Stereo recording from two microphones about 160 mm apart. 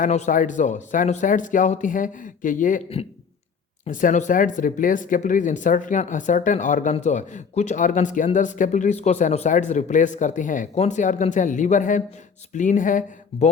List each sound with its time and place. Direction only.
0.0 s speech: 50° left (ahead or behind)
3.8 s speech: 55° left (ahead or behind)